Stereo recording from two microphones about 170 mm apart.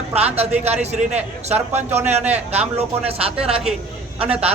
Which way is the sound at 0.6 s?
40° right (ahead or behind).